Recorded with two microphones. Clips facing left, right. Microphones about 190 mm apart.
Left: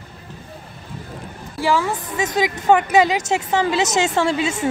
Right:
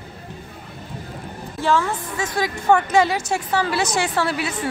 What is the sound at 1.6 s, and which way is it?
A woman's voice, 10° left (ahead or behind).